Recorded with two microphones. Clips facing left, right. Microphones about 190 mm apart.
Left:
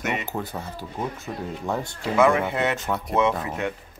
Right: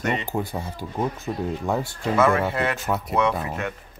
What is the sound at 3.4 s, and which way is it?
Speech, 15° left (ahead or behind).